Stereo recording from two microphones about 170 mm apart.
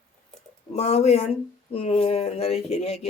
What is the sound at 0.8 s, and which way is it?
Speech, 40° left (ahead or behind).